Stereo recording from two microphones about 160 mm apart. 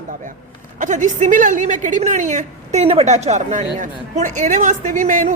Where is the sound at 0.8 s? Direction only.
50° right (ahead or behind).